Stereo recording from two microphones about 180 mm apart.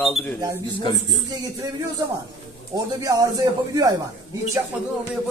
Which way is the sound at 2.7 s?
20° right (ahead or behind).